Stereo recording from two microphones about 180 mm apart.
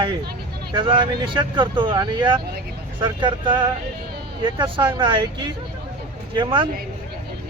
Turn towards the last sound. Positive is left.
turn(degrees=-25)  # may be behind; listen again after turning